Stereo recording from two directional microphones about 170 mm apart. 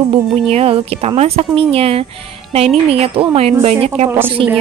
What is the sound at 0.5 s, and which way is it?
Speech, 40° right (ahead or behind).